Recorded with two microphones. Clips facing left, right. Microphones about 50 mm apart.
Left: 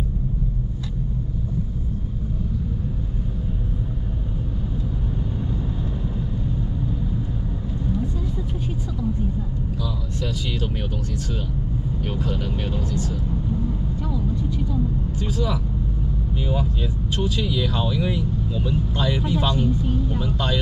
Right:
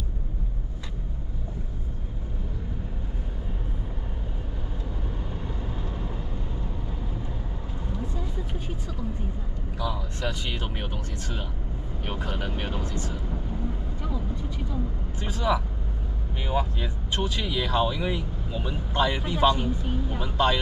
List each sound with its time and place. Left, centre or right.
9.8 s vehicle: right
12.0 s speech: right
15.1 s speech: right